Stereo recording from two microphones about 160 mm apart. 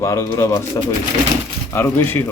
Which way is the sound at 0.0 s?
20° left (ahead or behind).